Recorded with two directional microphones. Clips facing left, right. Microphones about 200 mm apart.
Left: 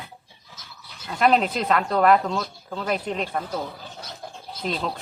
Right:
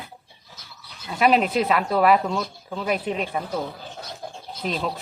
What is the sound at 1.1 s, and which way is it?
Speech, 5° right (ahead or behind).